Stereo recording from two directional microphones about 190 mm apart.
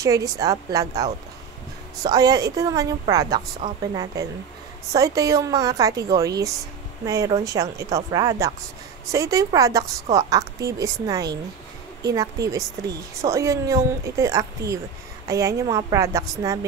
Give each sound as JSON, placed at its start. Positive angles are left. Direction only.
{"t": 0.0, "sound": "a woman's voice", "side_deg": -15}
{"t": 2.0, "sound": "a woman's voice", "side_deg": -20}